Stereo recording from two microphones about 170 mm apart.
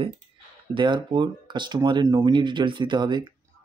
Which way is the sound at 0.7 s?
30° right (ahead or behind).